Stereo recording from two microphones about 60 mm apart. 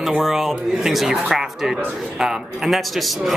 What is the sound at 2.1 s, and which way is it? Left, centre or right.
Speech, centre.